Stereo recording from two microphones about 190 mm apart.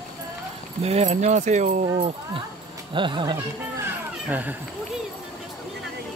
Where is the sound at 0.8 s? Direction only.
35° right (ahead or behind).